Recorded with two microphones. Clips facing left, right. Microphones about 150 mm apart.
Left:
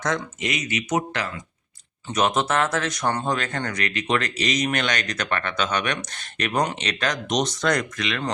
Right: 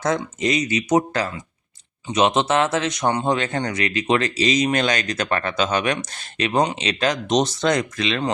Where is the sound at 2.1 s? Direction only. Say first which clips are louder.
Right 4 dB; 25° right (ahead or behind).